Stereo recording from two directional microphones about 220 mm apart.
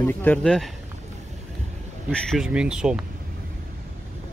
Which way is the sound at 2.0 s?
Centre (ahead or behind).